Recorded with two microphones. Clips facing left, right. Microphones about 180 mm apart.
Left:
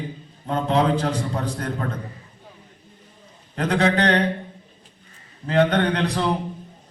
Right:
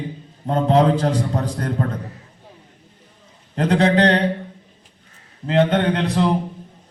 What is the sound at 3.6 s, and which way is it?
Speech, 30° right (ahead or behind).